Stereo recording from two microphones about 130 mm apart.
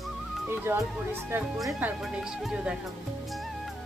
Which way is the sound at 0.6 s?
20° right (ahead or behind).